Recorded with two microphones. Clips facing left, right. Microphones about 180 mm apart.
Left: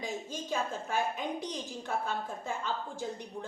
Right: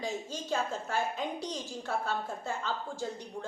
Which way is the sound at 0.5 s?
15° left (ahead or behind).